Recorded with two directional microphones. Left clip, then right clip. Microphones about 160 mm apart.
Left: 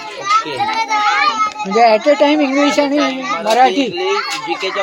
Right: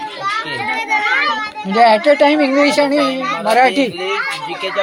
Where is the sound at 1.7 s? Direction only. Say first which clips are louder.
Right 1 dB; 10° right (ahead or behind).